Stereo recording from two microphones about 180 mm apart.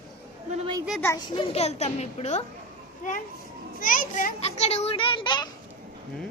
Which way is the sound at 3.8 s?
50° left (ahead or behind).